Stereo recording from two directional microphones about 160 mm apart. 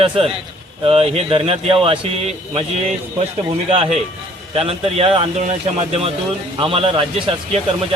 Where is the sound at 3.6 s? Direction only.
35° right (ahead or behind).